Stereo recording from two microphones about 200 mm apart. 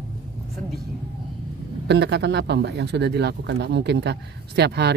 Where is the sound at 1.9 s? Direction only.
60° right (ahead or behind).